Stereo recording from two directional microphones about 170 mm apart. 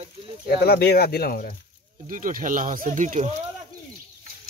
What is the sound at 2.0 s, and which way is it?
Speech, 50° right (ahead or behind).